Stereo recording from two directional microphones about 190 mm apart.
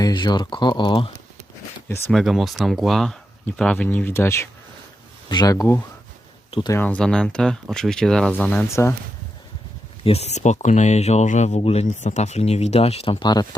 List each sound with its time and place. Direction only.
0.0 s speech: 20° left (ahead or behind)
1.9 s speech: 5° left (ahead or behind); by 6.7 s 25° left (ahead or behind)
6.7 s speech: 5° left (ahead or behind)
10.0 s speech: 30° left (ahead or behind)